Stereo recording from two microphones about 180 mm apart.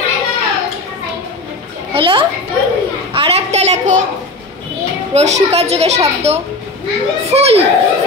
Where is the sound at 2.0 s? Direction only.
30° right (ahead or behind).